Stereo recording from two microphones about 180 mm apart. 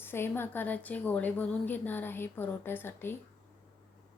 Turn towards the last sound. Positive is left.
turn(degrees=10)  # may be behind; listen again after turning